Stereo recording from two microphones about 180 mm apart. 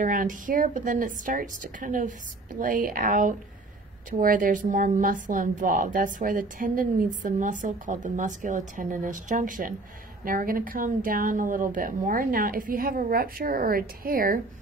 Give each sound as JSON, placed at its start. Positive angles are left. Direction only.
{"t": 0.0, "sound": "speech", "side_deg": -50}